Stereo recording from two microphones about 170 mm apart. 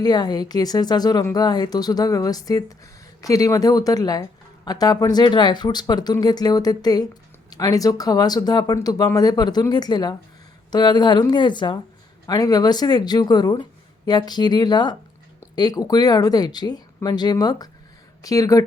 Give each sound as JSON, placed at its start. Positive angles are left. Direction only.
{"t": 0.0, "sound": "speech", "side_deg": 25}